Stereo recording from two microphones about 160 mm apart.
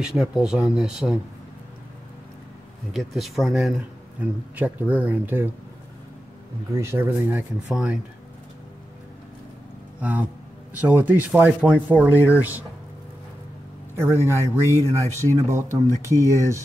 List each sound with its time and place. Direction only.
0.0 s speech: centre (ahead or behind)
2.9 s speech: centre (ahead or behind)
6.7 s speech: 15° right (ahead or behind)
9.9 s speech: 10° right (ahead or behind)
13.9 s speech: 15° right (ahead or behind)